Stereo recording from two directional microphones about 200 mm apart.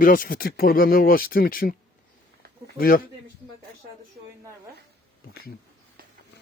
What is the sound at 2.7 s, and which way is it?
Speech, 45° left (ahead or behind).